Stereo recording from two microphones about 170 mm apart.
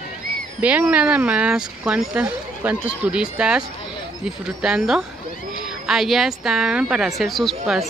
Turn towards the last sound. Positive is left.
turn(degrees=0)  # may be behind; listen again after turning